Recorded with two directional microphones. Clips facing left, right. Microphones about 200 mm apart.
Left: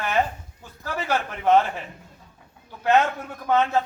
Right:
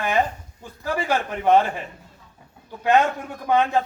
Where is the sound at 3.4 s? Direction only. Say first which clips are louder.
Right 1 dB; 15° right (ahead or behind).